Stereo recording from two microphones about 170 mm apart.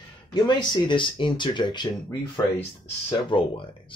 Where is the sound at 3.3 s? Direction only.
30° left (ahead or behind).